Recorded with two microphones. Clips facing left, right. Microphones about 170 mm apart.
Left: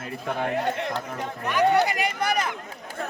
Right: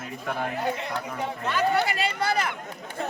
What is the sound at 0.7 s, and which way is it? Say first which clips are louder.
Speech: left 2 dB; 5° right (ahead or behind).